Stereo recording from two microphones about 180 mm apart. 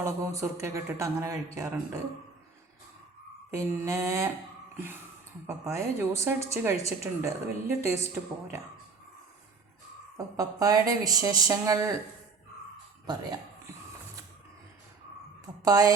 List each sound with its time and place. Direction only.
0.0 s a woman's voice: 15° right (ahead or behind)
3.5 s a woman's voice: 15° right (ahead or behind)
5.7 s a woman's voice: 15° right (ahead or behind)
10.2 s speech: 20° right (ahead or behind)
13.1 s speech: 25° right (ahead or behind)
15.6 s speech: 20° right (ahead or behind)